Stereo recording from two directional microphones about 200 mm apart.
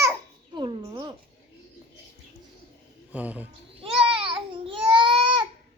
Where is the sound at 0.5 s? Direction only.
25° right (ahead or behind).